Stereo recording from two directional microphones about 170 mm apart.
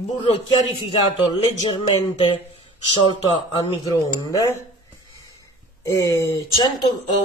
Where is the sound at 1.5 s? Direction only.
45° left (ahead or behind).